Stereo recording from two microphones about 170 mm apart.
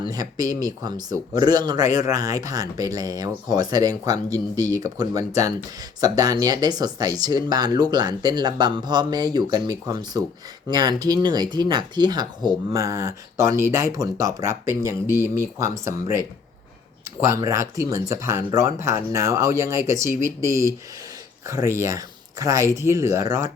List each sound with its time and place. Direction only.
0.0 s speech: 20° right (ahead or behind)
17.2 s speech: 20° right (ahead or behind)